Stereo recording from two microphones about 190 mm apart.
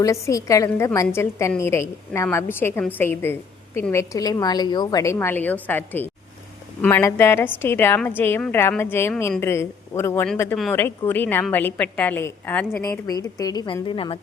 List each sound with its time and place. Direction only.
0.0 s a woman's voice: 15° left (ahead or behind)